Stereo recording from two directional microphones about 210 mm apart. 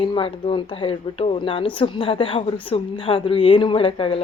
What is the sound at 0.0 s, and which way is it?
Speech, 25° left (ahead or behind).